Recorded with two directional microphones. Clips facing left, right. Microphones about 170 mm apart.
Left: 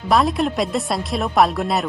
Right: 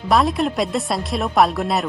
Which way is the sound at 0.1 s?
Centre (ahead or behind).